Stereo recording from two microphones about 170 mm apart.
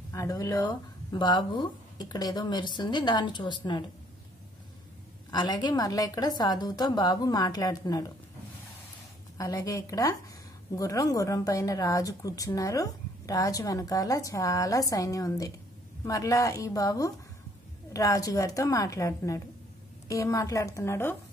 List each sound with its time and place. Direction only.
0.1 s a woman's voice: 20° left (ahead or behind)
5.3 s a woman's voice: 25° left (ahead or behind)
9.4 s a woman's voice: 20° left (ahead or behind)